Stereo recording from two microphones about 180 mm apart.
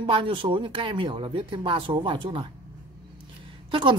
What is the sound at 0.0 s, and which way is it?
Speech, 30° right (ahead or behind).